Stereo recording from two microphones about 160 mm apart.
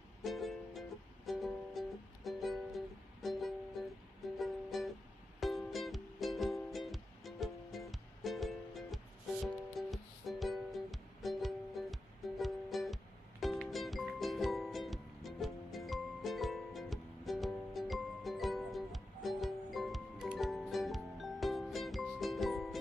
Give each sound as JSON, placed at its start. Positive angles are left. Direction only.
{"t": 0.2, "sound": "music", "side_deg": 0}